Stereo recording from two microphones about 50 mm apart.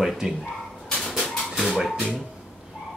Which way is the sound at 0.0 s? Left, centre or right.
Centre.